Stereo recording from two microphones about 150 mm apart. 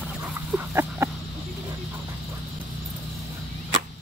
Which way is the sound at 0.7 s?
15° right (ahead or behind).